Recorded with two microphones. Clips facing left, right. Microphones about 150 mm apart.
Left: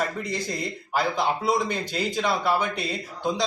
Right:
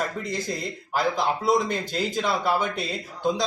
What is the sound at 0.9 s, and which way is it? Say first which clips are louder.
Speech: even; centre (ahead or behind).